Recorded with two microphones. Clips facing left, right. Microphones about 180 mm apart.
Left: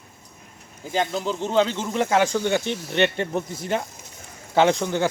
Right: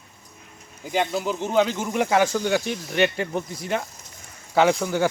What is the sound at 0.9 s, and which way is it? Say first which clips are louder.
Speech: even; 5° right (ahead or behind).